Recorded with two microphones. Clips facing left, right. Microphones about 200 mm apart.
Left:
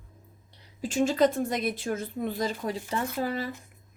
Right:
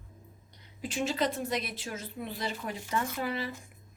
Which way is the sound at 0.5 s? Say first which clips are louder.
Left 6 dB; 40° left (ahead or behind).